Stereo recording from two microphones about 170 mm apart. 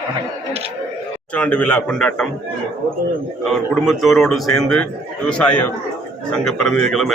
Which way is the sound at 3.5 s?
Centre (ahead or behind).